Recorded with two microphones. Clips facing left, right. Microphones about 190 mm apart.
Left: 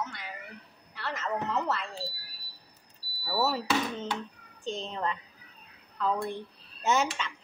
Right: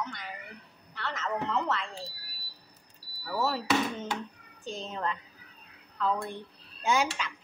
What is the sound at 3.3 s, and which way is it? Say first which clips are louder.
Speech: left 1 dB; 5° left (ahead or behind).